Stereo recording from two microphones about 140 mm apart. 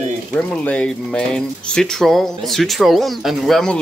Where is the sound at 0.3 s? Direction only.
5° left (ahead or behind).